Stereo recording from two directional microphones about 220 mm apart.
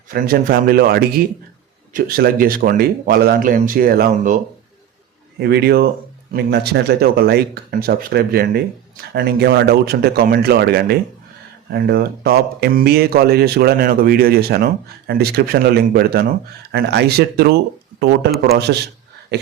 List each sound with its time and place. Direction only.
0.1 s speech: 40° right (ahead or behind)
5.4 s speech: 50° right (ahead or behind)
18.7 s speech: 50° right (ahead or behind)